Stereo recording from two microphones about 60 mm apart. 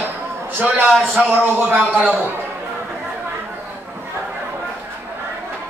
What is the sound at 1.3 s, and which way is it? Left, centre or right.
Speech, right.